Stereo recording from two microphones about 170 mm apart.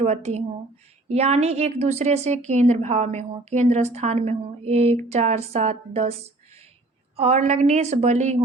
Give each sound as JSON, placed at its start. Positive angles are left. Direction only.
{"t": 0.0, "sound": "a woman's voice", "side_deg": -40}
{"t": 7.2, "sound": "a woman's voice", "side_deg": -40}